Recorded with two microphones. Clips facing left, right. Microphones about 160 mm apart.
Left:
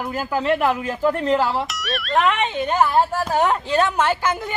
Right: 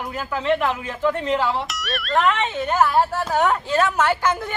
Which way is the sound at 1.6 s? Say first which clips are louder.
Left 1 dB; centre (ahead or behind).